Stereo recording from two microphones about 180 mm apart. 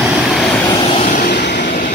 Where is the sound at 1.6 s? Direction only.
50° left (ahead or behind).